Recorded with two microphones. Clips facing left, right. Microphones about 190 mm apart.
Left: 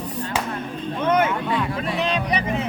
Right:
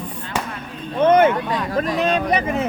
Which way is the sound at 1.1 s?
45° right (ahead or behind).